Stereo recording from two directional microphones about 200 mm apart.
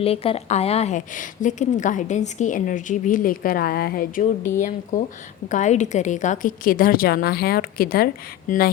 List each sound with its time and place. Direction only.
0.0 s a woman's voice: 30° left (ahead or behind); by 8.7 s 45° left (ahead or behind)